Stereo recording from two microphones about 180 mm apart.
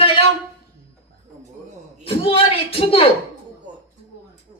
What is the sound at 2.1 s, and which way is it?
A woman's voice, 30° left (ahead or behind).